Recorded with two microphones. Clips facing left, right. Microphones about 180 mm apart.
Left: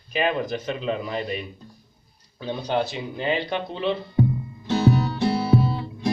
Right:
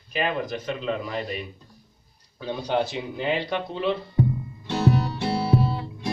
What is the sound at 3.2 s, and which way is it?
Speech, 10° right (ahead or behind).